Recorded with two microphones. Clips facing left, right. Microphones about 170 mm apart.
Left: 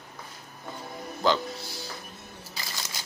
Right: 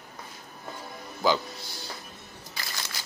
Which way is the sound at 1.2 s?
5° right (ahead or behind).